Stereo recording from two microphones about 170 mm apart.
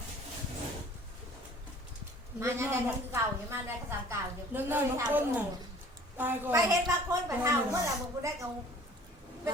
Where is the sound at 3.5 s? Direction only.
15° right (ahead or behind).